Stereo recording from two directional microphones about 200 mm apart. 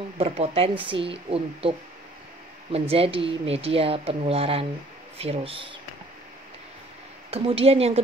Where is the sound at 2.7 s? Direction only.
30° right (ahead or behind).